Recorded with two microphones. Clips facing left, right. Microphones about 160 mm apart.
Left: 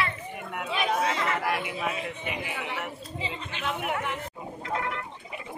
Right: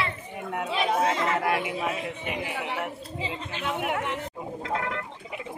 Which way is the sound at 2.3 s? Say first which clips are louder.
Right 4 dB; 45° right (ahead or behind).